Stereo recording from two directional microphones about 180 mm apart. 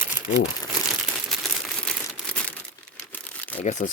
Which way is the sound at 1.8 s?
5° left (ahead or behind).